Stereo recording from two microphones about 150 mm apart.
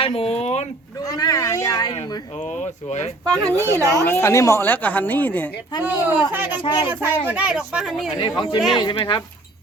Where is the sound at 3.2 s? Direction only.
20° right (ahead or behind).